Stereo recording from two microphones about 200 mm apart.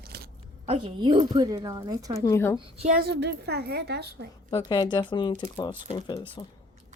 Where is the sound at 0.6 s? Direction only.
25° right (ahead or behind).